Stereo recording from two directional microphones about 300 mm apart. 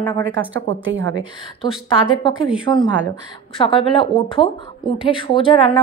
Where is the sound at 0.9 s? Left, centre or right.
Right.